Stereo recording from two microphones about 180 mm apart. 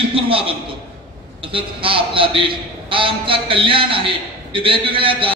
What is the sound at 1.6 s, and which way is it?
A man's voice, 30° right (ahead or behind).